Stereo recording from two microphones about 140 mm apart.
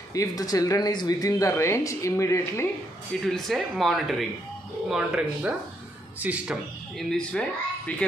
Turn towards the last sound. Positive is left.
turn(degrees=5)  # may be behind; listen again after turning